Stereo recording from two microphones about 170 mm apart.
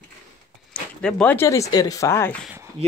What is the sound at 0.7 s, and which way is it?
Speech, 5° left (ahead or behind).